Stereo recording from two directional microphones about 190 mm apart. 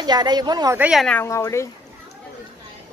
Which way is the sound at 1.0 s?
10° left (ahead or behind).